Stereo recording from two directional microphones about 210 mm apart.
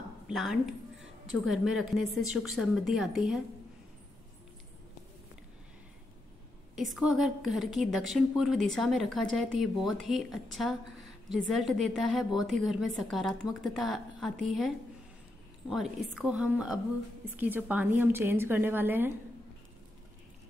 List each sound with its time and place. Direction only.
0.3 s a woman's voice: centre (ahead or behind)
6.7 s a woman's voice: centre (ahead or behind)
15.7 s a woman's voice: 5° right (ahead or behind)